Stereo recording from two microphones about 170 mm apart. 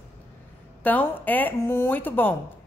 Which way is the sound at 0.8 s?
10° left (ahead or behind).